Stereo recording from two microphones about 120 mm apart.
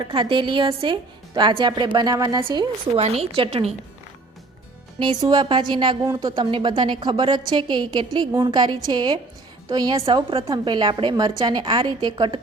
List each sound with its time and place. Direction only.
0.1 s a woman's voice: 45° right (ahead or behind)
3.0 s a woman's voice: 60° right (ahead or behind)
5.0 s a woman's voice: 40° right (ahead or behind)